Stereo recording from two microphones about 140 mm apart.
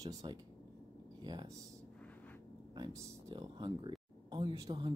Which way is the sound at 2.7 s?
30° right (ahead or behind).